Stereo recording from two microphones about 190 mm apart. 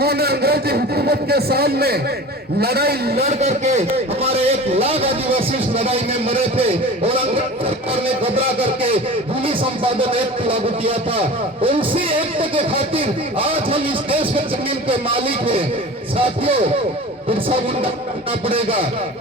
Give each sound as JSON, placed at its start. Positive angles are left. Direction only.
{"t": 0.0, "sound": "a man's voice", "side_deg": -55}
{"t": 3.2, "sound": "a man's voice", "side_deg": -35}